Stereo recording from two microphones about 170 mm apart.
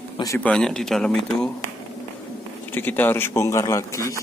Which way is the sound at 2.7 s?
10° left (ahead or behind).